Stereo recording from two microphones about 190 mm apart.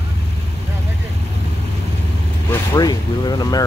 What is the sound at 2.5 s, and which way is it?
Speech, 20° left (ahead or behind).